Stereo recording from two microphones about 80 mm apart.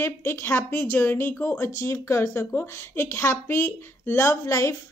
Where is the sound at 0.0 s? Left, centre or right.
Left.